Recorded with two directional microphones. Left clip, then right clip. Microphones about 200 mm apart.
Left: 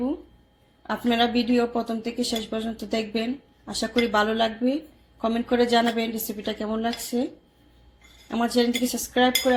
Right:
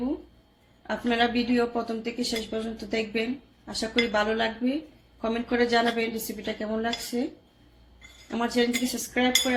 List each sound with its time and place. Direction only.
0.9 s speech: 25° left (ahead or behind)
8.3 s speech: 20° left (ahead or behind)